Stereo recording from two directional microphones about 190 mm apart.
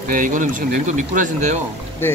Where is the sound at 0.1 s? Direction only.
45° right (ahead or behind).